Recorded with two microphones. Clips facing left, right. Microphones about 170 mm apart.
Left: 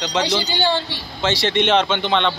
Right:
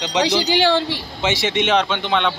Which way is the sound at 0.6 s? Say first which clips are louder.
Right 3 dB; 90° right.